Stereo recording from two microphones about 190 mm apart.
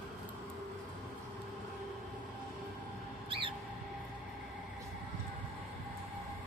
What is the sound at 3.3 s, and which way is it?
Mouse, 30° right (ahead or behind).